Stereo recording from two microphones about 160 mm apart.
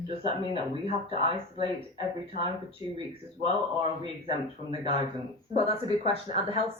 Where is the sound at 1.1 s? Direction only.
35° right (ahead or behind).